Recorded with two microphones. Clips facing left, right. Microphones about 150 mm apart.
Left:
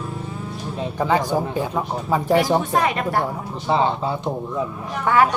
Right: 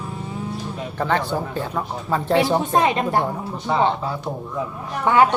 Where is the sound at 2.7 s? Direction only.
25° right (ahead or behind).